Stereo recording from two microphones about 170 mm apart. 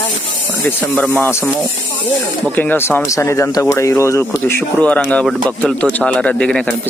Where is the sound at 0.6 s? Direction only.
10° left (ahead or behind).